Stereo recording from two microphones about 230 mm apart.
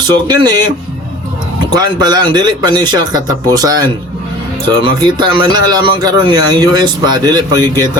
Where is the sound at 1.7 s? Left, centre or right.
Centre.